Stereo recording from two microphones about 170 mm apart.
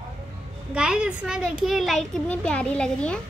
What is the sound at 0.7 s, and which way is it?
A child's voice, 5° right (ahead or behind).